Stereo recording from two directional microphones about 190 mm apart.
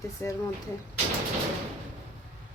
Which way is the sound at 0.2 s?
15° left (ahead or behind).